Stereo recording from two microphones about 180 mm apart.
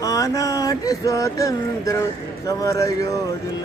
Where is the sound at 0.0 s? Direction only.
20° left (ahead or behind).